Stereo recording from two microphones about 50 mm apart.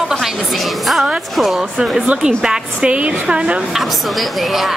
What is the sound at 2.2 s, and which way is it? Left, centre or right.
A woman's voice, centre.